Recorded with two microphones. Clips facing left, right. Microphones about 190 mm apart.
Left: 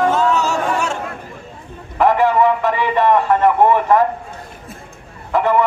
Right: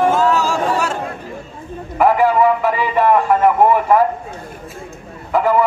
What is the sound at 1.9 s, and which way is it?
A man's voice, 10° right (ahead or behind).